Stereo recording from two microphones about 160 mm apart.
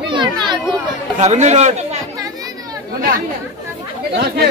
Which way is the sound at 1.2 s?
45° right (ahead or behind).